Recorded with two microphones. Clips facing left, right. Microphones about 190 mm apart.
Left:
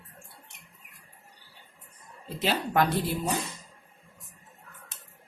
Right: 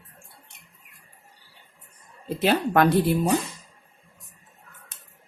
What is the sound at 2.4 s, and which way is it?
Speech, 60° right (ahead or behind).